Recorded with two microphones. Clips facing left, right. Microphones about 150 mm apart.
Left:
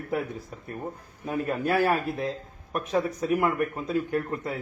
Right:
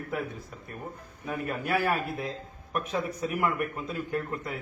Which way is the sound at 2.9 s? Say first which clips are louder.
Left 8 dB; 35° left (ahead or behind).